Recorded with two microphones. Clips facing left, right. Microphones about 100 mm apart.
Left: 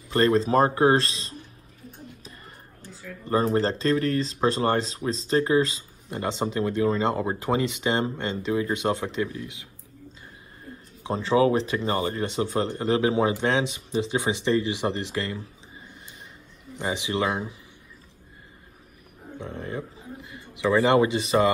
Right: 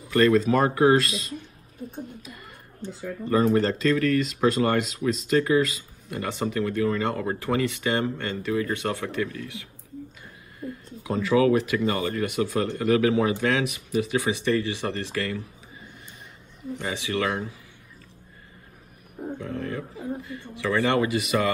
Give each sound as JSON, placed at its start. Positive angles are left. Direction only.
{"t": 0.1, "sound": "speech", "side_deg": 30}
{"t": 2.2, "sound": "a sound", "side_deg": 35}
{"t": 3.3, "sound": "speech", "side_deg": 30}
{"t": 10.6, "sound": "a sound", "side_deg": -25}
{"t": 11.1, "sound": "speech", "side_deg": 30}
{"t": 16.7, "sound": "speech", "side_deg": 20}
{"t": 19.4, "sound": "speech", "side_deg": 25}